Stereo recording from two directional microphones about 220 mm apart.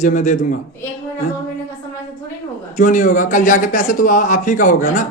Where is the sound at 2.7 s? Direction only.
35° left (ahead or behind).